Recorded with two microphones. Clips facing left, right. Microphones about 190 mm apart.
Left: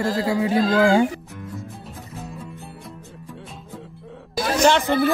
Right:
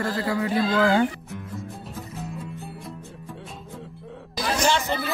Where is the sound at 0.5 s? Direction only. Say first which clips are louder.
Left 4 dB; 35° left (ahead or behind).